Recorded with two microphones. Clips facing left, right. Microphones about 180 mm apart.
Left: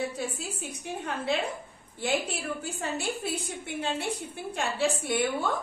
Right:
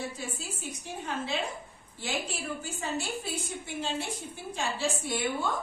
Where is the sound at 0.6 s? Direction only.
60° left (ahead or behind).